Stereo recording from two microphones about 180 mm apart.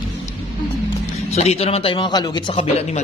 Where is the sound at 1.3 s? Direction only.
35° left (ahead or behind).